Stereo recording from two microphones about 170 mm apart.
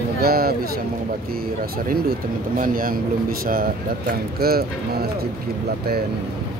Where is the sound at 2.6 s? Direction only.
55° right (ahead or behind).